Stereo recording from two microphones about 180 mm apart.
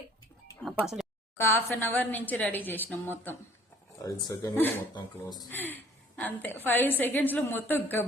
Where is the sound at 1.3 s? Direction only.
10° left (ahead or behind).